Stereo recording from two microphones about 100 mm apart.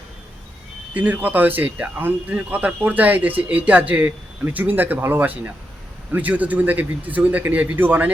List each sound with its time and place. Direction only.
0.9 s speech: 15° right (ahead or behind)